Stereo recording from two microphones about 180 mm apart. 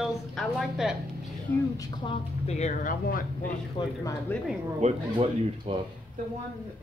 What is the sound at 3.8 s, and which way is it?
Speech, 25° left (ahead or behind).